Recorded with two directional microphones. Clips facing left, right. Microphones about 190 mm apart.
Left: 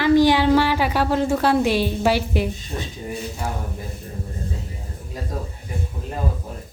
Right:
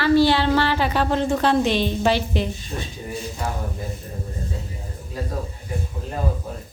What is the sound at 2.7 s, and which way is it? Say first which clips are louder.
Speech: left 1 dB; 25° left (ahead or behind).